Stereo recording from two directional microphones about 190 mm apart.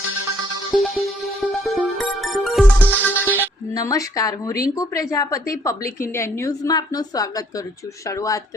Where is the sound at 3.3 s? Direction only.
15° left (ahead or behind).